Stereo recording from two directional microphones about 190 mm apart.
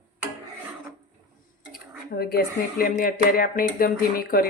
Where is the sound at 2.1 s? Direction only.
55° left (ahead or behind).